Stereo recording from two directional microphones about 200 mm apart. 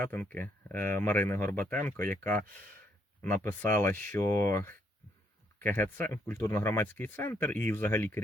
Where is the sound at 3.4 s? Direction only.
10° left (ahead or behind).